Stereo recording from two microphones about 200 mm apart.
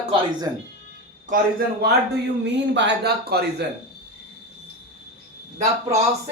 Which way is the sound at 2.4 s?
60° right (ahead or behind).